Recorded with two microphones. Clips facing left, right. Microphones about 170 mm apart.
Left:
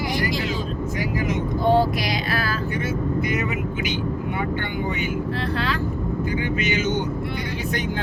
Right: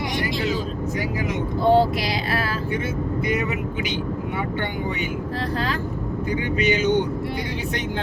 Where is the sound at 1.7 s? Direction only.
25° right (ahead or behind).